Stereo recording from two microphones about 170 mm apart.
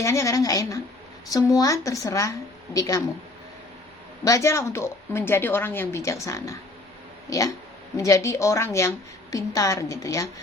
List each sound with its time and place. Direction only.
0.0 s speech: 15° left (ahead or behind)
4.2 s a woman's voice: 20° left (ahead or behind)